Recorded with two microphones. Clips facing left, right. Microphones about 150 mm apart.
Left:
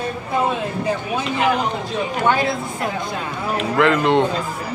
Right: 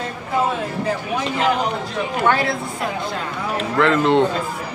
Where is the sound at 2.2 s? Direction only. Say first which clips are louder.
Even; 20° left (ahead or behind).